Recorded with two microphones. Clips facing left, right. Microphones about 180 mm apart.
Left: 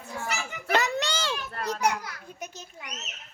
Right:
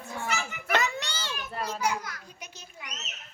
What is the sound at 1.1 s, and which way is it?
Children playing, 90° left.